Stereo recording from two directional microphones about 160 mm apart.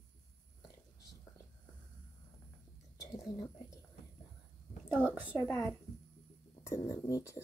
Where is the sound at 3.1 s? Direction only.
20° left (ahead or behind).